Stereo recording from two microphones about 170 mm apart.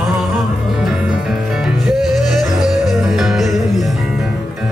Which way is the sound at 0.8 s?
5° right (ahead or behind).